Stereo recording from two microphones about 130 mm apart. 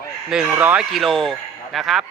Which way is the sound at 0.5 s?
10° right (ahead or behind).